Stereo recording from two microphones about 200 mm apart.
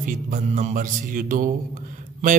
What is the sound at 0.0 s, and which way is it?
Mantra, 45° right (ahead or behind).